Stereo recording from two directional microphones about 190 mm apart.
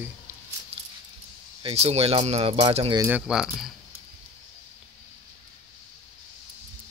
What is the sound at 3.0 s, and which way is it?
Speech, 5° right (ahead or behind).